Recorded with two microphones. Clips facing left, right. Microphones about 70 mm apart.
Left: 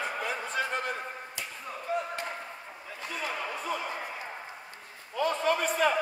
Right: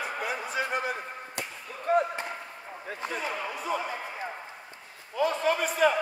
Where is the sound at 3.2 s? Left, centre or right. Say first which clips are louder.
Right 1 dB; centre.